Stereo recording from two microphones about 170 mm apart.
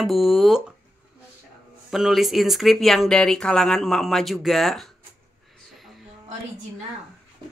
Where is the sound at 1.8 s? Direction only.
Centre (ahead or behind).